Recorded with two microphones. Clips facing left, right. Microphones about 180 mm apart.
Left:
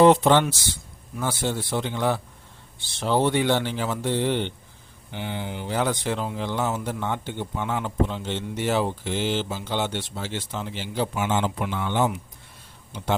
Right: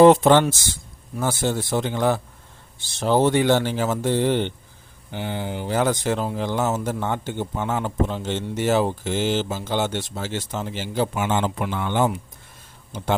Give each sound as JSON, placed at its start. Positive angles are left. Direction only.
{"t": 0.0, "sound": "speech", "side_deg": -45}